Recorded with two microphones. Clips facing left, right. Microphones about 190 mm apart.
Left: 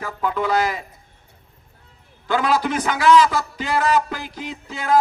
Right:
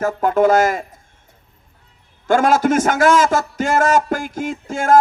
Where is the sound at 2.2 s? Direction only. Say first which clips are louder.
Right 6 dB; 45° right (ahead or behind).